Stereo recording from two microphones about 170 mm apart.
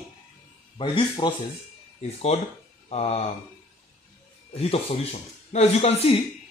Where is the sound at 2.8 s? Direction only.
35° left (ahead or behind).